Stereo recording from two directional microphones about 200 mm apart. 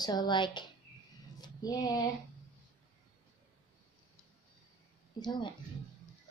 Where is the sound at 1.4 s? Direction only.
20° left (ahead or behind).